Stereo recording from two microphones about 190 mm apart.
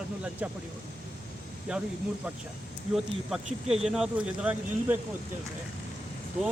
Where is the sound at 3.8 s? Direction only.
5° right (ahead or behind).